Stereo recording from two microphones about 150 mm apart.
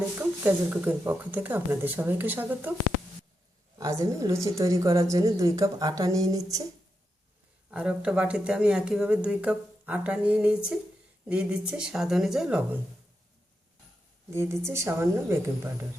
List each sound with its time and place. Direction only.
0.2 s speech: 10° right (ahead or behind)
3.8 s a woman's voice: 20° right (ahead or behind)
7.7 s speech: 5° right (ahead or behind)
14.3 s speech: 20° right (ahead or behind)